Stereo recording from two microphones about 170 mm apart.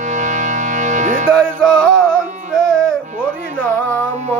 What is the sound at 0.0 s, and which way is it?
Music, 45° right (ahead or behind).